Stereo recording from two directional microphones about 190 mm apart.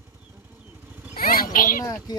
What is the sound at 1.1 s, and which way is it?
Vehicle, 50° left (ahead or behind).